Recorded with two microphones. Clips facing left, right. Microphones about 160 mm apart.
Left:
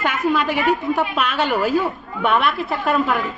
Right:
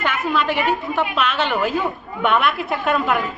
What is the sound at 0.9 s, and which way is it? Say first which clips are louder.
Speech: even; 10° left (ahead or behind).